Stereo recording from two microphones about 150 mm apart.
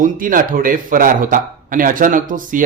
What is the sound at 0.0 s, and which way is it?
A man's voice, 65° right (ahead or behind).